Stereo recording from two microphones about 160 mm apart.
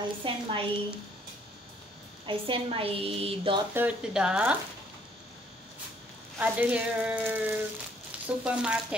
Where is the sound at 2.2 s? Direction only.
35° right (ahead or behind).